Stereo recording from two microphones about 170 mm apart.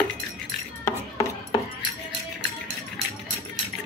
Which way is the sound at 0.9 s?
15° left (ahead or behind).